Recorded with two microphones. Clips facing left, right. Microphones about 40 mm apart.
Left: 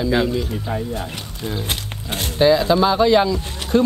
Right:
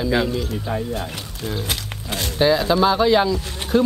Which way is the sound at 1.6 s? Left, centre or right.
Left.